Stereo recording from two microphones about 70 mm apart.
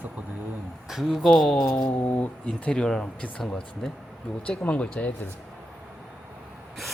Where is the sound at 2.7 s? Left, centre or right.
Centre.